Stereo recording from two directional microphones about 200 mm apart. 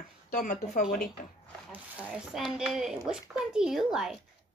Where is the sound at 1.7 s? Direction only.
5° right (ahead or behind).